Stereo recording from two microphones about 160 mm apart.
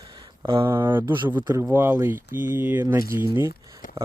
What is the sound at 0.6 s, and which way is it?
Speech, 15° right (ahead or behind).